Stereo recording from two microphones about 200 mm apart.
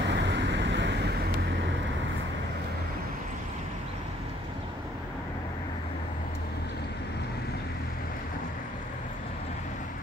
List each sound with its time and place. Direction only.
0.0 s vehicle: 60° right (ahead or behind)